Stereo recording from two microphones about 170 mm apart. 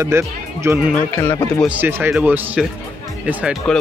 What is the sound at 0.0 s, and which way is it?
Speech, 15° right (ahead or behind).